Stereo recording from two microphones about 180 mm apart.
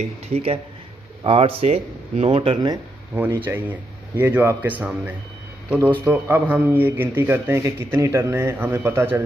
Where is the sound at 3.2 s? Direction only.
10° right (ahead or behind).